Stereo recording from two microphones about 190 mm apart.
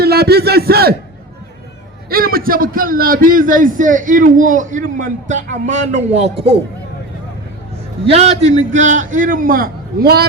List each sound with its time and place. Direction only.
0.0 s speech: 55° right (ahead or behind)
2.0 s a man's voice: 50° right (ahead or behind); by 6.6 s 30° right (ahead or behind)
8.1 s a man's voice: 35° right (ahead or behind); by 10.2 s 55° right (ahead or behind)